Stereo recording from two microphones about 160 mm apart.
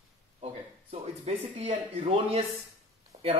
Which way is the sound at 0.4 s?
35° right (ahead or behind).